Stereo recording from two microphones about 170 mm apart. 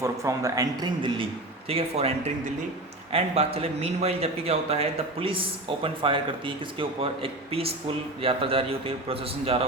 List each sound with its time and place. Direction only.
0.0 s a man's voice: 20° right (ahead or behind); by 9.6 s 35° right (ahead or behind)